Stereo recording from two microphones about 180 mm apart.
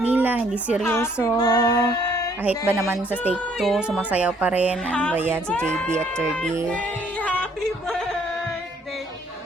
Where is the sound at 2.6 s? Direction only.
15° right (ahead or behind).